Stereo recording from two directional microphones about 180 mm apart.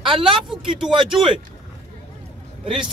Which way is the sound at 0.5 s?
Centre (ahead or behind).